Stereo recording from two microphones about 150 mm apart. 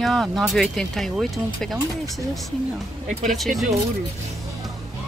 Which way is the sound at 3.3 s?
Centre (ahead or behind).